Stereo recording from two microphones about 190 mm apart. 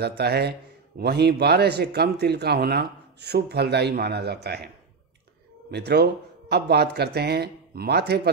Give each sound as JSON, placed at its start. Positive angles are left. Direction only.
{"t": 0.2, "sound": "speech", "side_deg": -60}
{"t": 5.7, "sound": "speech", "side_deg": -60}